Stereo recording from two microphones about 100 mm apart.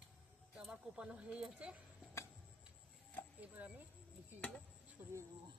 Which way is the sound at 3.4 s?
15° right (ahead or behind).